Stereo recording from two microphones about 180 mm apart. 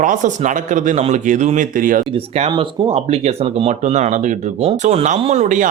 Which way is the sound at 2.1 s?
35° right (ahead or behind).